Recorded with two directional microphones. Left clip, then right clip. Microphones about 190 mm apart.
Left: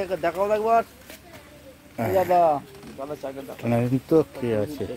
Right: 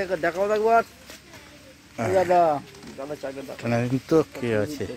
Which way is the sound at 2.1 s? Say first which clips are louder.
Even; 40° right (ahead or behind).